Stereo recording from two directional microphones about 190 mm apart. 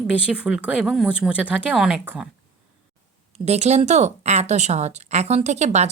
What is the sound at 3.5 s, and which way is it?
Speech, 35° right (ahead or behind).